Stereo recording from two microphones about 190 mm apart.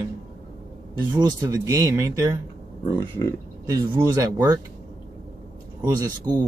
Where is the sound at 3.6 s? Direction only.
20° right (ahead or behind).